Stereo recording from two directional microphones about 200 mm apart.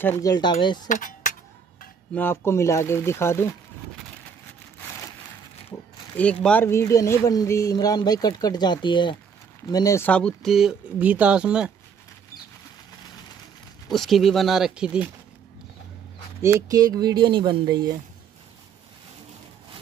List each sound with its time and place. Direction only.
0.0 s speech: 15° left (ahead or behind)
0.8 s speech: 40° left (ahead or behind)
2.1 s speech: 10° left (ahead or behind)
6.1 s speech: 5° left (ahead or behind)
13.8 s speech: centre (ahead or behind)
16.4 s speech: 15° right (ahead or behind)